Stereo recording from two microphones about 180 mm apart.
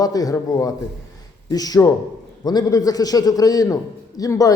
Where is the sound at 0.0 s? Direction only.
20° left (ahead or behind).